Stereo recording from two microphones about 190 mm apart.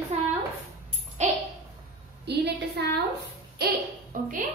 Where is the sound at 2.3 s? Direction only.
60° right (ahead or behind).